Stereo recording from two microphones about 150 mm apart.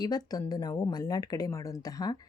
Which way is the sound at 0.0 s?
25° left (ahead or behind).